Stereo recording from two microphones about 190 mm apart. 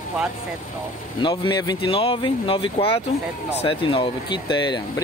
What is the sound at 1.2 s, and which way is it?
Speech, 25° left (ahead or behind).